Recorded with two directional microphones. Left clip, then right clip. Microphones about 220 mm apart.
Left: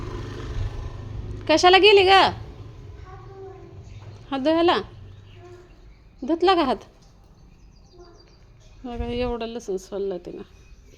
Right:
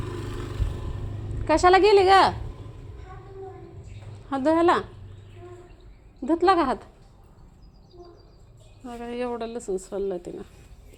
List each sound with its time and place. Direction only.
0.0 s vehicle: 25° right (ahead or behind)
1.5 s a woman's voice: 10° left (ahead or behind)
4.3 s a woman's voice: 5° left (ahead or behind)
6.2 s a woman's voice: 10° left (ahead or behind)
8.8 s a woman's voice: 20° left (ahead or behind); by 10.4 s 5° left (ahead or behind)